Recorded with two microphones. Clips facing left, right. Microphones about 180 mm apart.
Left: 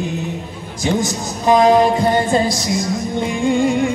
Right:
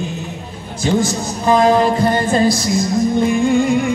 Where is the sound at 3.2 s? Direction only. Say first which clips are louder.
Right 1 dB; 20° left (ahead or behind).